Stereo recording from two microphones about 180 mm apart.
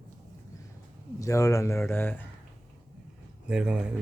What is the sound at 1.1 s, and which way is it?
Speech, 15° left (ahead or behind).